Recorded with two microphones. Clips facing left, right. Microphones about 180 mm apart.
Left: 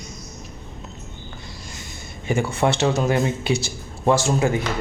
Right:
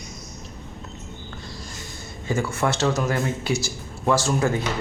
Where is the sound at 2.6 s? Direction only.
20° left (ahead or behind).